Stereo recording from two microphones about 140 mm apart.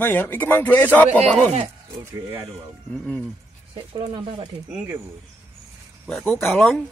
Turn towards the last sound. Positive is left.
turn(degrees=5)  # may be behind; listen again after turning